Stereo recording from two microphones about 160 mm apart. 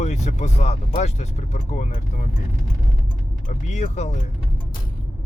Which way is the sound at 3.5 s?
50° left (ahead or behind).